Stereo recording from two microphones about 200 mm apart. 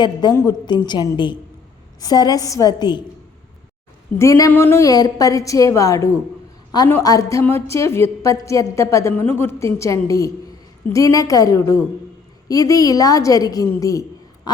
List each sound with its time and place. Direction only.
0.0 s a woman's voice: 20° left (ahead or behind)
4.2 s a woman's voice: 15° left (ahead or behind)
14.5 s a sound: 20° left (ahead or behind)